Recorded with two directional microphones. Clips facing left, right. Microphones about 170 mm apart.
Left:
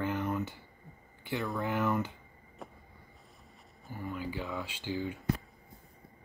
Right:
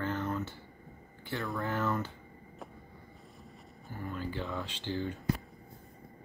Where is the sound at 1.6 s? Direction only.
15° left (ahead or behind).